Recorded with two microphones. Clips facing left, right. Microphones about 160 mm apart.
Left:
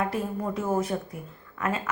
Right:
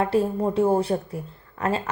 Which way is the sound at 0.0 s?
30° right (ahead or behind).